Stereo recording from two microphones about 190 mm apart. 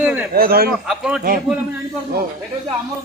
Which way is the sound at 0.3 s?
55° right (ahead or behind).